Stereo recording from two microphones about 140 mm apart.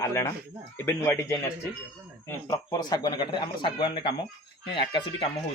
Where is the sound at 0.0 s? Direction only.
20° left (ahead or behind).